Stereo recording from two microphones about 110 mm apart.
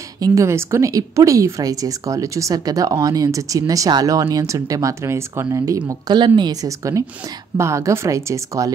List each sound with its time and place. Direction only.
0.2 s a woman's voice: 30° right (ahead or behind)
5.9 s a woman's voice: 40° right (ahead or behind)